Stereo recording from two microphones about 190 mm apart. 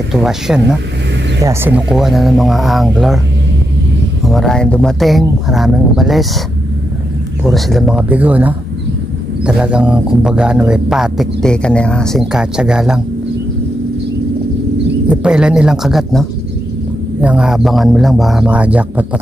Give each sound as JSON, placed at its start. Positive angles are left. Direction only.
{"t": 0.1, "sound": "speech", "side_deg": 0}
{"t": 1.4, "sound": "speech", "side_deg": -15}
{"t": 1.9, "sound": "speech", "side_deg": 0}
{"t": 4.3, "sound": "speech", "side_deg": 0}
{"t": 7.4, "sound": "speech", "side_deg": 0}
{"t": 15.0, "sound": "speech", "side_deg": -5}